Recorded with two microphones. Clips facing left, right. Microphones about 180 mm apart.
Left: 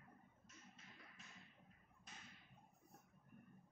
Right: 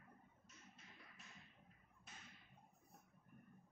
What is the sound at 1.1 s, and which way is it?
Tap, centre (ahead or behind).